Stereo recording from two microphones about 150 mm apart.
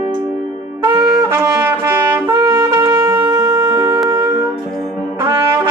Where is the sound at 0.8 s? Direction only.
15° right (ahead or behind).